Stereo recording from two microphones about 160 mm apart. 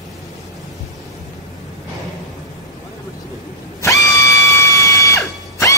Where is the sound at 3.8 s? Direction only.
20° left (ahead or behind).